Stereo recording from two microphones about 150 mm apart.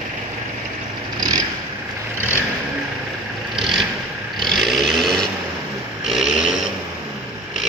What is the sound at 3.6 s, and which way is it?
Vehicle, centre (ahead or behind).